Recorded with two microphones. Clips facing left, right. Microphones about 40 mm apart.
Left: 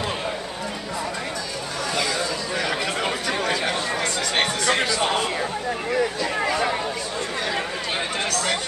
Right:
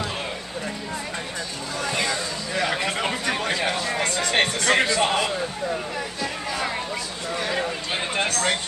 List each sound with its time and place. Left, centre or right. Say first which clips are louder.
4.0 s music: right 3 dB; right
8.3 s chatter: even; right